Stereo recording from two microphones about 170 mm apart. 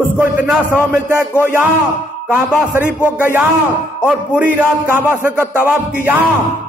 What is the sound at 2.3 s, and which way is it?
A man's voice, 10° right (ahead or behind).